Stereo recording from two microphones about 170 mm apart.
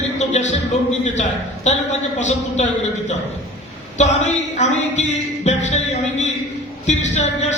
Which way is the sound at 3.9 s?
45° left (ahead or behind).